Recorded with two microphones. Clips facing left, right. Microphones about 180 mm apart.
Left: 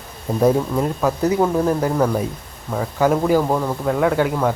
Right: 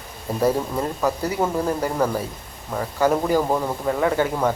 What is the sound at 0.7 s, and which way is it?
Speech, 5° left (ahead or behind).